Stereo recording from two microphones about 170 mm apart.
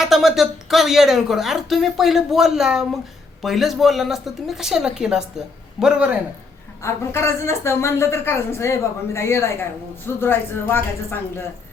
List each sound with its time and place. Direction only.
0.0 s a woman's voice: centre (ahead or behind)
6.8 s a woman's voice: 15° left (ahead or behind)